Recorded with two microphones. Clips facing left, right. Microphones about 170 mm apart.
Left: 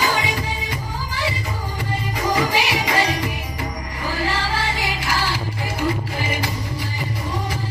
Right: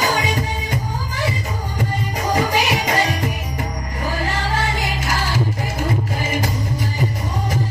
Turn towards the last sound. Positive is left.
turn(degrees=-45)  # may be behind; listen again after turning